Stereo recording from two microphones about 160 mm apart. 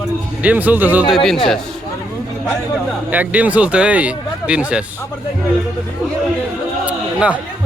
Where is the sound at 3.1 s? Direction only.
10° right (ahead or behind).